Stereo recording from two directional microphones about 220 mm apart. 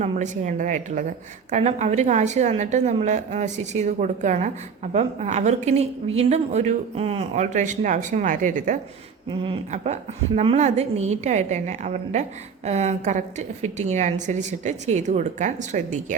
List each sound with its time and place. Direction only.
0.0 s a woman's voice: 35° right (ahead or behind)
9.3 s a woman's voice: 25° right (ahead or behind)